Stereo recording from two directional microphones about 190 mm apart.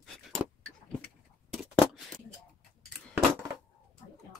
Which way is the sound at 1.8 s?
Centre (ahead or behind).